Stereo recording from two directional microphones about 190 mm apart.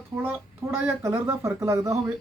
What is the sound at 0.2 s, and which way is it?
Speech, 10° right (ahead or behind).